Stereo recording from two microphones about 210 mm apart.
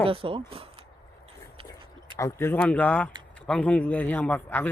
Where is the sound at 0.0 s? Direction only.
25° right (ahead or behind).